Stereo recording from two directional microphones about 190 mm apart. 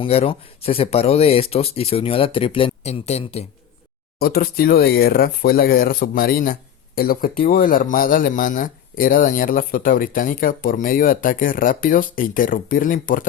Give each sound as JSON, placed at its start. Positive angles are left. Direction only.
{"t": 0.0, "sound": "speech", "side_deg": 30}
{"t": 4.2, "sound": "speech", "side_deg": 55}